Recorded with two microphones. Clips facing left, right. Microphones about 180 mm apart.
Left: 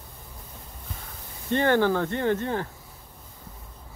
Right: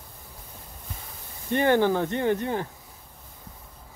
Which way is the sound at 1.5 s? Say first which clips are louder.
Even; 15° right (ahead or behind).